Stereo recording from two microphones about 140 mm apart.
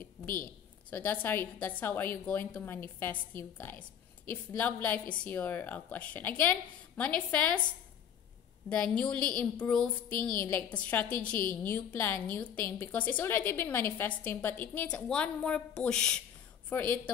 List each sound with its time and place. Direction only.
0.2 s a woman's voice: 15° left (ahead or behind)
8.6 s a woman's voice: 10° left (ahead or behind)